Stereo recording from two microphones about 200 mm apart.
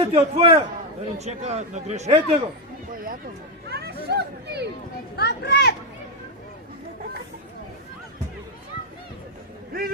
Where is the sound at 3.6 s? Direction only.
55° right (ahead or behind).